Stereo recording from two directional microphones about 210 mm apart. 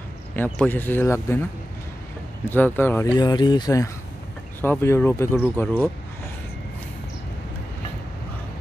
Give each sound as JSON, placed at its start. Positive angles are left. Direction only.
{"t": 0.4, "sound": "speech", "side_deg": 10}
{"t": 2.5, "sound": "speech", "side_deg": 10}